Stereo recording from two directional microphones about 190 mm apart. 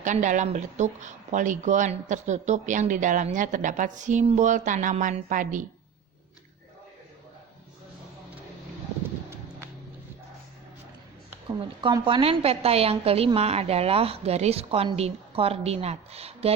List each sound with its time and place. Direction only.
0.0 s speech: 40° right (ahead or behind)
11.4 s speech: 25° right (ahead or behind)